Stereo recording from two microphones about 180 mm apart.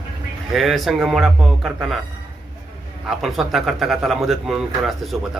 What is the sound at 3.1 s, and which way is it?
Speech, centre (ahead or behind).